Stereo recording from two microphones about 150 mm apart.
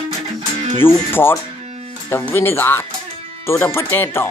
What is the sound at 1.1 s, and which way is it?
Speech, 15° left (ahead or behind).